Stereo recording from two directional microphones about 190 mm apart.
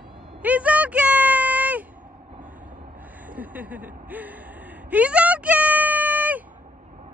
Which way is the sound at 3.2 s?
10° right (ahead or behind).